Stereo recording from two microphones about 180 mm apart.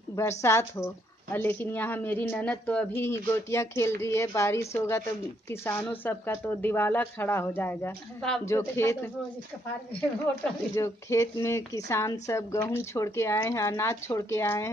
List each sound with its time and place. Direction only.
0.1 s speech: 15° left (ahead or behind)
10.8 s speech: 15° left (ahead or behind)